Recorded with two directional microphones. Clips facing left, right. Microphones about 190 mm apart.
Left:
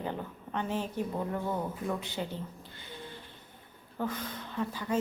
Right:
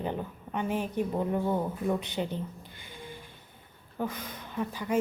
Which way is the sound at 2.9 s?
10° right (ahead or behind).